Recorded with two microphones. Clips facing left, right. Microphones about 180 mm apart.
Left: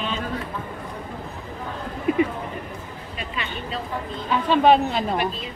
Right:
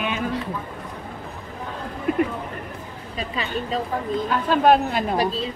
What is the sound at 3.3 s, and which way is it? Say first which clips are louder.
Speech: right 5 dB; 35° right (ahead or behind).